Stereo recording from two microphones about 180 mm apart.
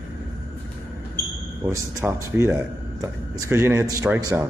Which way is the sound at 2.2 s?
15° right (ahead or behind).